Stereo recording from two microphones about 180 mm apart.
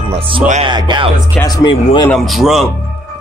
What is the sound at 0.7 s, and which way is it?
Music, 25° right (ahead or behind).